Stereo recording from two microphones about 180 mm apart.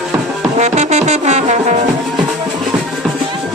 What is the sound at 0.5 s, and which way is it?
Brass instrument, 40° right (ahead or behind).